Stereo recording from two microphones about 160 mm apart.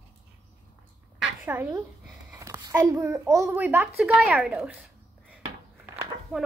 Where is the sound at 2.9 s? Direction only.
15° right (ahead or behind).